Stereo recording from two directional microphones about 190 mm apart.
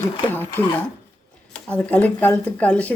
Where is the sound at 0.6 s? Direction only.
35° right (ahead or behind).